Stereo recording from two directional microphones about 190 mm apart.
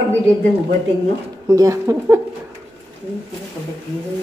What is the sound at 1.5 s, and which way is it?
Speech, 15° right (ahead or behind).